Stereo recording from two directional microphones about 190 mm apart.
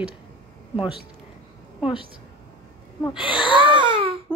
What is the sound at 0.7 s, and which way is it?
Speech, 25° left (ahead or behind).